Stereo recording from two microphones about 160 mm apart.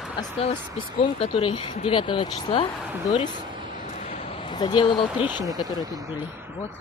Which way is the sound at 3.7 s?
45° left (ahead or behind).